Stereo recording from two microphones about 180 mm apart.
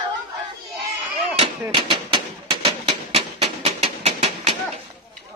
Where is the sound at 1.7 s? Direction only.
30° right (ahead or behind).